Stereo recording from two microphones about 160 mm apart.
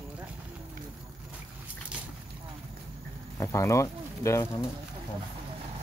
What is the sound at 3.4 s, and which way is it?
Speech, 20° left (ahead or behind).